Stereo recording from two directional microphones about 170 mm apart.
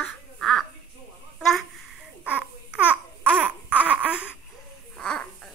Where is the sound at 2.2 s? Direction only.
10° right (ahead or behind).